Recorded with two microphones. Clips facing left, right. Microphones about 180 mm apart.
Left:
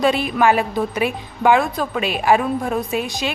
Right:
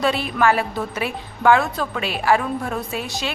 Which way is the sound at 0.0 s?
15° left (ahead or behind).